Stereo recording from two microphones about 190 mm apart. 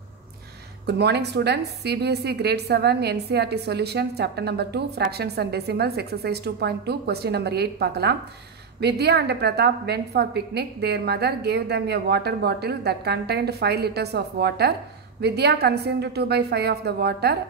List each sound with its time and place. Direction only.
0.8 s a woman's voice: 60° right (ahead or behind)